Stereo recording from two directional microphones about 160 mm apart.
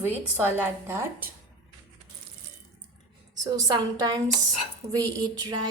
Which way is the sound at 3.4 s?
25° right (ahead or behind).